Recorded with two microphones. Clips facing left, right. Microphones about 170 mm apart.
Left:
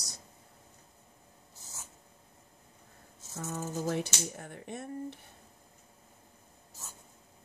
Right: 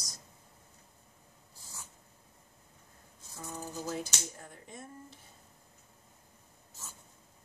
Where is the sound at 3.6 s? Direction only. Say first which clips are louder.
Left 5 dB; 45° left (ahead or behind).